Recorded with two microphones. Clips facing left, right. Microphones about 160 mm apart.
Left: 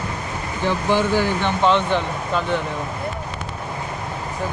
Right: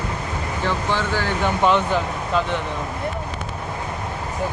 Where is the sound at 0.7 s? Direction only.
15° left (ahead or behind).